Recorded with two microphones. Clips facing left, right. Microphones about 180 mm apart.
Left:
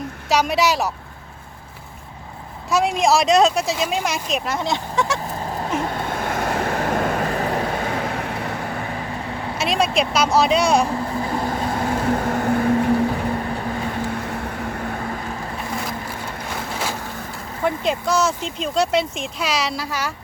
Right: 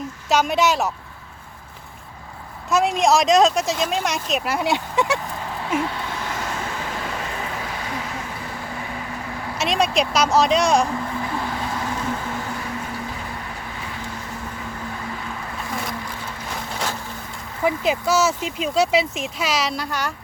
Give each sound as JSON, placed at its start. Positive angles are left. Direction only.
{"t": 0.3, "sound": "speech", "side_deg": 0}
{"t": 2.6, "sound": "speech", "side_deg": 0}
{"t": 5.3, "sound": "honk", "side_deg": 40}
{"t": 5.8, "sound": "vehicle", "side_deg": 50}
{"t": 9.6, "sound": "speech", "side_deg": 0}
{"t": 11.1, "sound": "vehicle", "side_deg": 35}
{"t": 17.6, "sound": "speech", "side_deg": -5}